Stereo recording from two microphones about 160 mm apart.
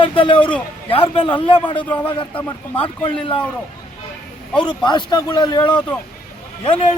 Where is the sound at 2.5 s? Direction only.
35° left (ahead or behind).